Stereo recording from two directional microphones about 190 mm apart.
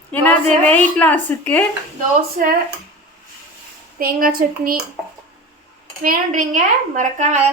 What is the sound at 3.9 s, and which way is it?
Speech, 50° right (ahead or behind).